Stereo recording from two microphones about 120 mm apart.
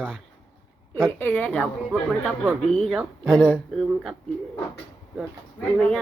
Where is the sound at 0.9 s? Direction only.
10° left (ahead or behind).